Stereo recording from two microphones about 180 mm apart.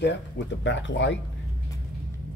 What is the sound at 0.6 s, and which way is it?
Speech, 80° left.